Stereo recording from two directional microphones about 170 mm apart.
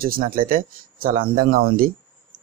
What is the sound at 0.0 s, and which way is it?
Speech, 60° right (ahead or behind).